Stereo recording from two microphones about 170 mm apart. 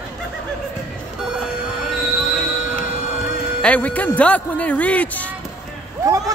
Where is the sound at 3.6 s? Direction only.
10° left (ahead or behind).